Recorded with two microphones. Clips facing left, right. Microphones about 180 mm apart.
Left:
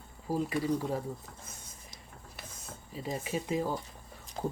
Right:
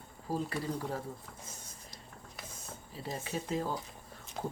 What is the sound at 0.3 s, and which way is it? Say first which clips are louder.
Speech: left 5 dB; 10° left (ahead or behind).